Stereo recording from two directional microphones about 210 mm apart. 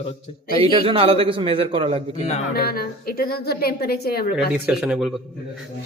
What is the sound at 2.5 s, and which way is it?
A woman's voice, 45° left (ahead or behind).